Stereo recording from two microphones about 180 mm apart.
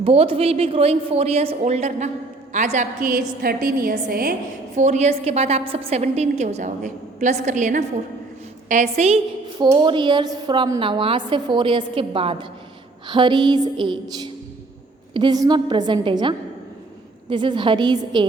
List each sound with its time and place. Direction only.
0.0 s a woman's voice: 30° right (ahead or behind); by 4.4 s 55° right (ahead or behind)
4.7 s a woman's voice: 40° right (ahead or behind)
9.6 s a woman's voice: 25° right (ahead or behind)
15.1 s a woman's voice: 25° right (ahead or behind)